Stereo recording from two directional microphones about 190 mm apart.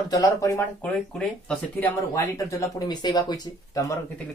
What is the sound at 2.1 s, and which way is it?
Speech, 15° left (ahead or behind).